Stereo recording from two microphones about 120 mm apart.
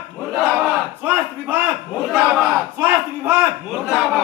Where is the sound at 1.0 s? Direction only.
20° right (ahead or behind).